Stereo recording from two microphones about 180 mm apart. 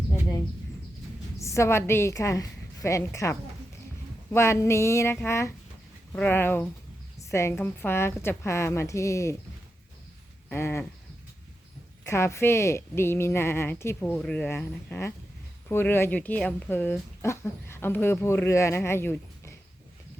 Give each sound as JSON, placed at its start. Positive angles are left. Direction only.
{"t": 1.4, "sound": "speech", "side_deg": 15}
{"t": 10.5, "sound": "speech", "side_deg": 15}
{"t": 12.0, "sound": "speech", "side_deg": 15}